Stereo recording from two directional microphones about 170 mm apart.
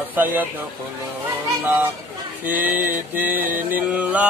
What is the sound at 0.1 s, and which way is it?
Speech, 10° right (ahead or behind).